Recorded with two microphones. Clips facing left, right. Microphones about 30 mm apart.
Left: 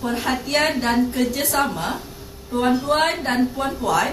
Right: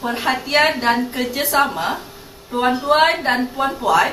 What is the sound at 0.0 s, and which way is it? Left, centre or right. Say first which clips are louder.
A woman's voice: right 3 dB; centre.